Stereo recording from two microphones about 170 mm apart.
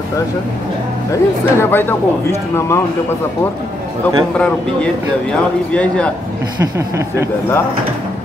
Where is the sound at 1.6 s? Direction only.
15° left (ahead or behind).